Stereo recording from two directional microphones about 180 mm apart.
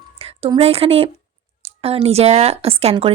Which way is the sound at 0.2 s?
30° right (ahead or behind).